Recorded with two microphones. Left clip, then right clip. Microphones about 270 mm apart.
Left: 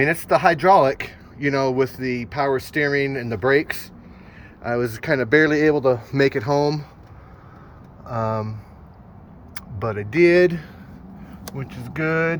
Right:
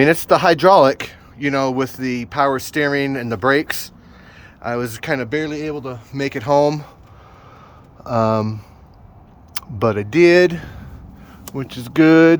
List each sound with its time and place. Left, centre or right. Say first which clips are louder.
0.0 s speech: right 4 dB; right; by 5.3 s centre
5.3 s a man's voice: left 7 dB; centre
6.1 s speech: right 3 dB; centre
9.6 s speech: right 8 dB; right